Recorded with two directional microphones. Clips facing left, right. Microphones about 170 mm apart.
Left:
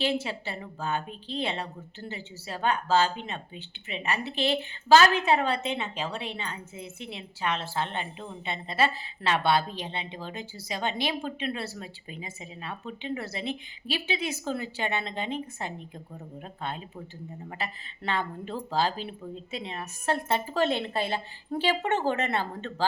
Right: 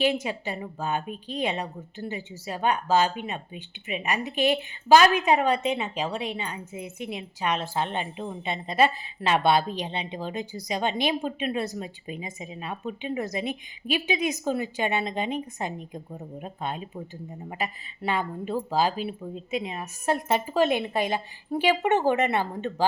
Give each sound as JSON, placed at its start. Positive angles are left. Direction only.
{"t": 0.0, "sound": "a woman's voice", "side_deg": -15}